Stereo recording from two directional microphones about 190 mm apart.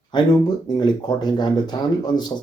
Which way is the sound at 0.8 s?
25° left (ahead or behind).